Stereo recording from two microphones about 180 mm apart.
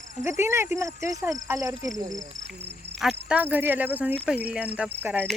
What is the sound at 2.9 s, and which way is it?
Speech, 5° right (ahead or behind).